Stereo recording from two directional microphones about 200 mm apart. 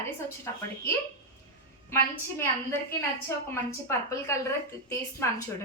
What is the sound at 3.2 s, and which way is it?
A woman's voice, 15° left (ahead or behind).